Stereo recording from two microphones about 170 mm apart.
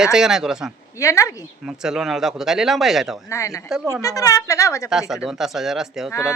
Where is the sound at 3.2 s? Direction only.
15° left (ahead or behind).